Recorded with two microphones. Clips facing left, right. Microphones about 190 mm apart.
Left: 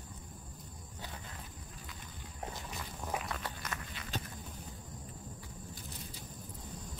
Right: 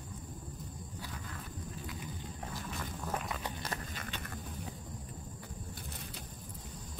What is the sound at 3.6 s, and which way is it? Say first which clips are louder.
Clip-clop: right 3 dB; 35° right (ahead or behind).